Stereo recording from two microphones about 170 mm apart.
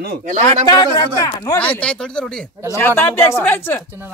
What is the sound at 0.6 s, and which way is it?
Speech, 25° left (ahead or behind).